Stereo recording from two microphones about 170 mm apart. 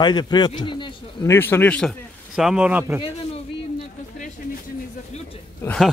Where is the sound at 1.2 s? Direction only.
15° left (ahead or behind); by 2.8 s 5° right (ahead or behind).